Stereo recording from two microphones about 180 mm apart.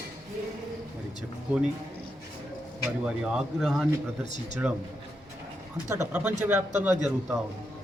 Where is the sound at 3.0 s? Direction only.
5° right (ahead or behind).